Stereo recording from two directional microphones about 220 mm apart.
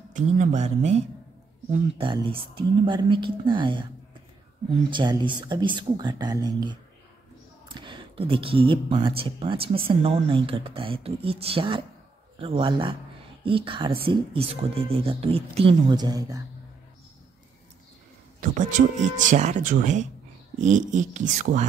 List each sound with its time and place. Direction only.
0.1 s speech: 35° right (ahead or behind); by 16.4 s 15° right (ahead or behind)
18.4 s speech: 35° right (ahead or behind)